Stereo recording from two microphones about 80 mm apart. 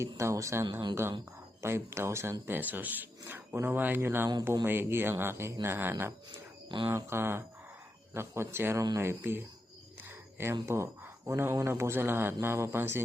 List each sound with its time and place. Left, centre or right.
0.0 s speech: right
1.6 s speech: right
2.5 s speech: right